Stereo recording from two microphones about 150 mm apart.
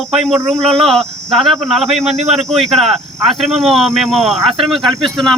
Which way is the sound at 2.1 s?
45° right (ahead or behind).